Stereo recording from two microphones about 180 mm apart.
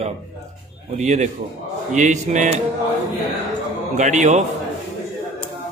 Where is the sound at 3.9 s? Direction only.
45° right (ahead or behind).